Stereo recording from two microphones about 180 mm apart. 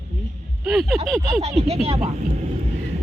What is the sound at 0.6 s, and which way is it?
Speech, centre (ahead or behind).